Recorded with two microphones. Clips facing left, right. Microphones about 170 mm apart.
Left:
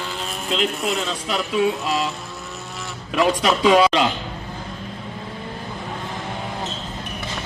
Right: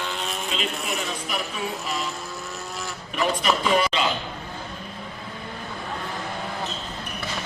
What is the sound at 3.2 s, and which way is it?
Speech, 80° left.